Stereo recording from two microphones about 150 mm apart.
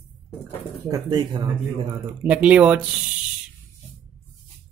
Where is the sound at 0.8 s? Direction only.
25° right (ahead or behind).